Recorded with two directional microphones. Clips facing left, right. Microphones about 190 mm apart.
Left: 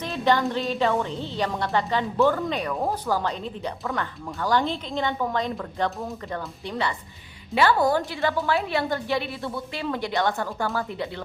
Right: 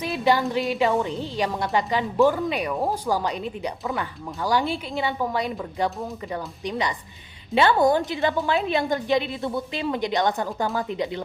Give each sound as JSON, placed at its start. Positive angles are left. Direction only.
{"t": 0.0, "sound": "music", "side_deg": -10}
{"t": 0.5, "sound": "a woman's voice", "side_deg": -15}